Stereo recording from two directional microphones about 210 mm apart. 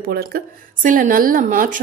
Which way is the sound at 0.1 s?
45° right (ahead or behind).